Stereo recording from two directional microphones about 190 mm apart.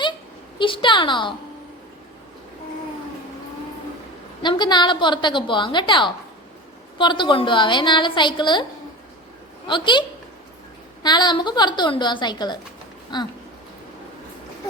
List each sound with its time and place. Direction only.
0.6 s a woman's voice: 25° left (ahead or behind)
4.4 s a woman's voice: 25° left (ahead or behind)
9.6 s a woman's voice: 25° left (ahead or behind)
11.0 s a woman's voice: 25° left (ahead or behind)